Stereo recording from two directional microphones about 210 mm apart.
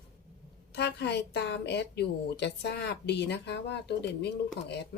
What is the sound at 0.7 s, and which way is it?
A woman's voice, 55° left (ahead or behind).